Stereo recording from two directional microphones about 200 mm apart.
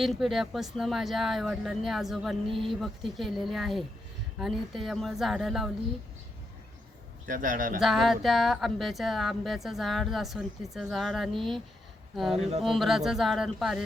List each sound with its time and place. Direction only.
0.0 s speech: centre (ahead or behind)
7.3 s speech: 40° right (ahead or behind)
7.8 s speech: centre (ahead or behind)